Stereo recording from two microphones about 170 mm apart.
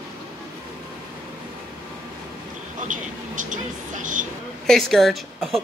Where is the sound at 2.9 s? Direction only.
50° right (ahead or behind).